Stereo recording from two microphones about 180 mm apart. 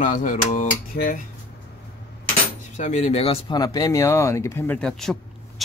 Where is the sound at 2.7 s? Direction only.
40° left (ahead or behind); by 5.1 s 5° left (ahead or behind).